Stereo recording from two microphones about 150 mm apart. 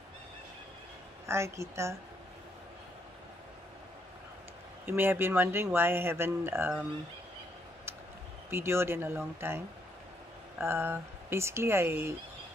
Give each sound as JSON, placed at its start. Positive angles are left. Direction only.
{"t": 1.2, "sound": "a woman's voice", "side_deg": -20}
{"t": 4.8, "sound": "speech", "side_deg": -15}
{"t": 8.5, "sound": "speech", "side_deg": -15}
{"t": 10.6, "sound": "speech", "side_deg": -15}